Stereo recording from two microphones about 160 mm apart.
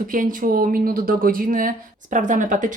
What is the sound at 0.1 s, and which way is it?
Speech, 60° right (ahead or behind).